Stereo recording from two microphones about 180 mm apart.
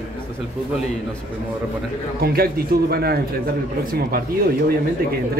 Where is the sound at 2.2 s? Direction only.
55° right (ahead or behind).